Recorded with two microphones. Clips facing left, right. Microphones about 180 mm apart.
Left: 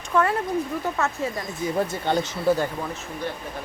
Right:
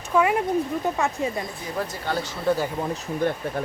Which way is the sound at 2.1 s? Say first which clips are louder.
Left 4 dB; 25° left (ahead or behind).